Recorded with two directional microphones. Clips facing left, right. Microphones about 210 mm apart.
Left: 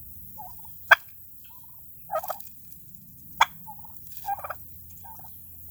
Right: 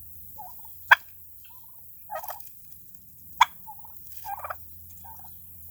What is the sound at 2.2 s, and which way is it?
Gobble, 35° left (ahead or behind).